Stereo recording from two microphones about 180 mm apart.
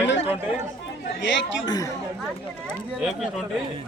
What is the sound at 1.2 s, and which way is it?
Speech, 85° left.